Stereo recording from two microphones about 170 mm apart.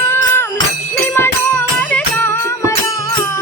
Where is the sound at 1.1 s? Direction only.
10° left (ahead or behind).